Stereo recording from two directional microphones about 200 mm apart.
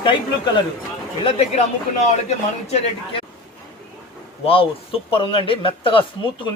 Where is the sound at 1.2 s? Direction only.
30° left (ahead or behind).